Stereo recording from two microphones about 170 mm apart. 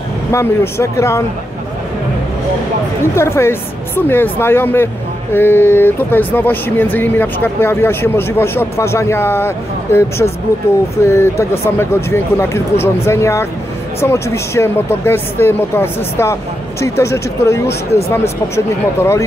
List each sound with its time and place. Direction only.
0.3 s speech: 15° left (ahead or behind)
3.2 s speech: 15° left (ahead or behind)